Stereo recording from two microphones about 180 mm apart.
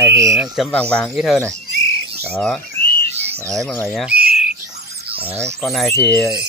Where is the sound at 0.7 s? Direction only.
5° left (ahead or behind).